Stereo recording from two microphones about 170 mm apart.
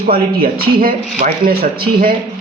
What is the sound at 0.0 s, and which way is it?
Speech, 60° right (ahead or behind).